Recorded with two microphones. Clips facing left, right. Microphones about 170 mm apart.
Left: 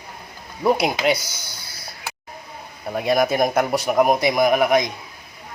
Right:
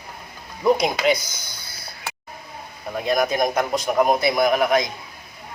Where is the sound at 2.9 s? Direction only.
5° left (ahead or behind).